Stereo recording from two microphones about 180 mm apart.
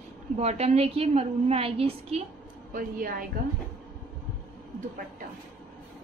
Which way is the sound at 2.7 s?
55° right (ahead or behind).